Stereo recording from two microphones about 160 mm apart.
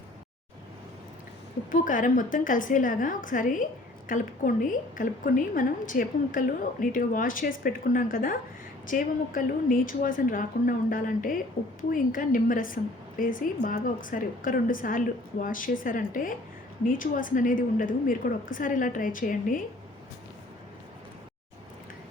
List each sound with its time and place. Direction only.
1.7 s a woman's voice: 55° left (ahead or behind)